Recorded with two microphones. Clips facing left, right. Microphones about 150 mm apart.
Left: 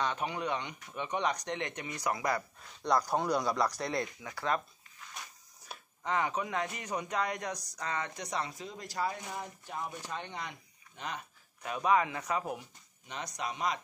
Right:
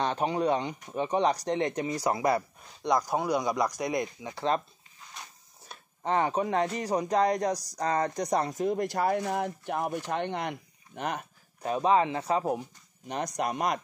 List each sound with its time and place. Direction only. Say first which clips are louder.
0.0 s speech: right 7 dB; 35° right (ahead or behind)
2.8 s speech: right 3 dB; 10° right (ahead or behind)
6.0 s speech: right 6 dB; 35° right (ahead or behind); by 11.2 s 55° right (ahead or behind)
11.6 s speech: right 5 dB; 30° right (ahead or behind)
13.0 s speech: right 8 dB; 45° right (ahead or behind)